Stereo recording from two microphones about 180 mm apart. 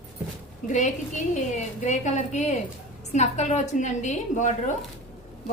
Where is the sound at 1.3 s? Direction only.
45° left (ahead or behind).